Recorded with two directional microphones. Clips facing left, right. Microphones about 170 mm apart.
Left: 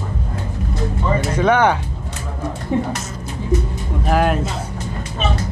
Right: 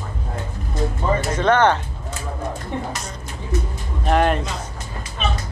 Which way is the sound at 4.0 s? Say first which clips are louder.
Left 1 dB; 5° left (ahead or behind).